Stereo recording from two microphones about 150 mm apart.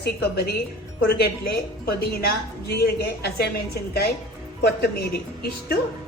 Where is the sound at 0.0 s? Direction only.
90° left.